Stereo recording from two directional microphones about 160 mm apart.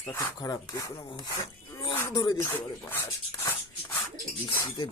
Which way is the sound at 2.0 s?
25° left (ahead or behind).